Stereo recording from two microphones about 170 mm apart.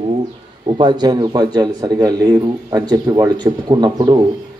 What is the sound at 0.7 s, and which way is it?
Speech, 25° right (ahead or behind).